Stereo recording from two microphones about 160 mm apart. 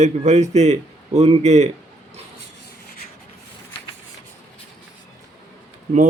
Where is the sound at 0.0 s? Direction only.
45° right (ahead or behind).